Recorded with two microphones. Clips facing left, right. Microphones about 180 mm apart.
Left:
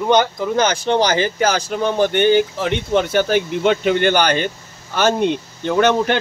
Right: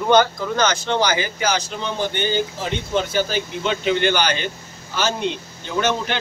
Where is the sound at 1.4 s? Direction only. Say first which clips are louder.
Left 5 dB; 50° left (ahead or behind).